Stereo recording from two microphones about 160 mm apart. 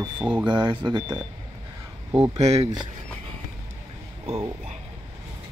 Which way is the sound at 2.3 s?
45° right (ahead or behind).